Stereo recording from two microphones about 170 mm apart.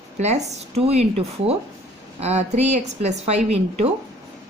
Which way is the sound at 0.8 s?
35° right (ahead or behind).